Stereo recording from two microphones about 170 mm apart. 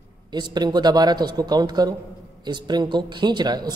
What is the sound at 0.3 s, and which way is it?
Speech, 25° right (ahead or behind).